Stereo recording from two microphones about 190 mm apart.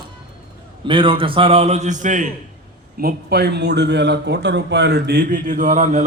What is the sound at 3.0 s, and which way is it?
A man's voice, 55° right (ahead or behind).